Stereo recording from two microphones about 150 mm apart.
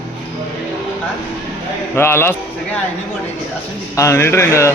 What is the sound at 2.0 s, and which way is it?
Speech, 15° left (ahead or behind).